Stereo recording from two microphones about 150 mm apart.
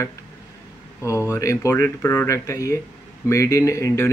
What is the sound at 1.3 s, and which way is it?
Speech, 20° left (ahead or behind).